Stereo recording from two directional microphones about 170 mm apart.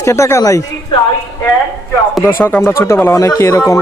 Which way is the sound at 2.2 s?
10° left (ahead or behind).